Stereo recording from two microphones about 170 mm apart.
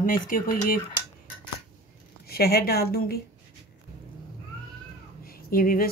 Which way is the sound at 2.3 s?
65° left (ahead or behind).